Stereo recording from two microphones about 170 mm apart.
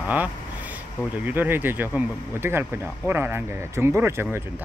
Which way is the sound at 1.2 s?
10° right (ahead or behind).